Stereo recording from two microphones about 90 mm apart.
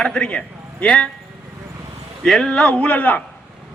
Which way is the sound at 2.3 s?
5° left (ahead or behind).